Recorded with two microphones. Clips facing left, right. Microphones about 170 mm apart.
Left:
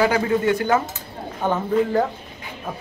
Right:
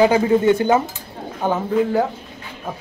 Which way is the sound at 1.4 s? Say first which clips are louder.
Right 1 dB; 5° right (ahead or behind).